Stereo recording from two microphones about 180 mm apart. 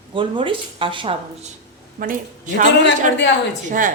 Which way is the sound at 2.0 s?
40° right (ahead or behind).